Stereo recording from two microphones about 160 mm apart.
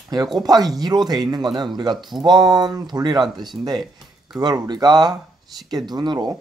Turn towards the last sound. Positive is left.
turn(degrees=-25)  # may be behind; listen again after turning